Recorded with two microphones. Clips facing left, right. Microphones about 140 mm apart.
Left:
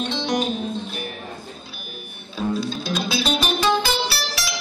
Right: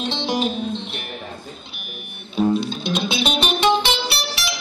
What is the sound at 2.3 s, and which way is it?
Music, 25° right (ahead or behind).